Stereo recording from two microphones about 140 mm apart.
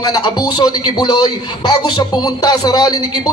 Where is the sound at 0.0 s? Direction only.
30° left (ahead or behind).